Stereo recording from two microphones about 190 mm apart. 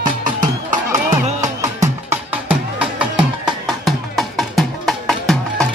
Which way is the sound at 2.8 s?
5° right (ahead or behind).